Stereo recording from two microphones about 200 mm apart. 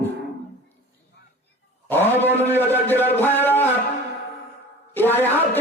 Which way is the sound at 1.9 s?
10° left (ahead or behind).